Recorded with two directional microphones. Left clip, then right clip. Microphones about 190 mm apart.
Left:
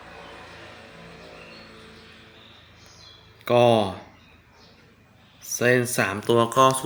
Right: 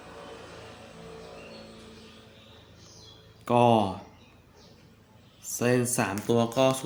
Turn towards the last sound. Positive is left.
turn(degrees=30)  # may be behind; listen again after turning